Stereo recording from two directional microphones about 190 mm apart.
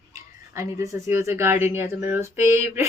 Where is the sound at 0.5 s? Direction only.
15° right (ahead or behind).